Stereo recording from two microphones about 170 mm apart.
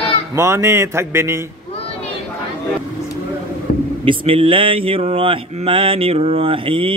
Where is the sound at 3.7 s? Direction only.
60° left (ahead or behind).